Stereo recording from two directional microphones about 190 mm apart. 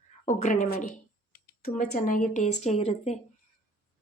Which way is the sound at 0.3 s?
40° left (ahead or behind).